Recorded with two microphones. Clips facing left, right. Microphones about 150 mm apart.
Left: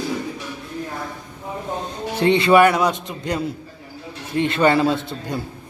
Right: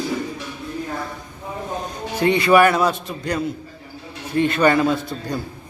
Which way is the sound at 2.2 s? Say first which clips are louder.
Left 1 dB; 25° left (ahead or behind).